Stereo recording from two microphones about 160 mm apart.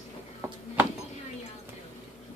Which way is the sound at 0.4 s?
15° right (ahead or behind).